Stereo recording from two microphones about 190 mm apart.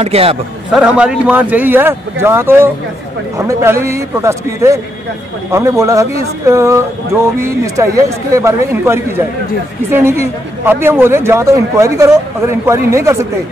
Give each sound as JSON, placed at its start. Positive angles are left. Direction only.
{"t": 0.0, "sound": "speech", "side_deg": -30}
{"t": 0.7, "sound": "a man's voice", "side_deg": -5}